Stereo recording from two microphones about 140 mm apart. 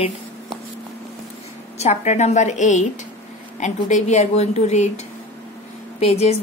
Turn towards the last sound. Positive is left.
turn(degrees=50)  # may be behind; listen again after turning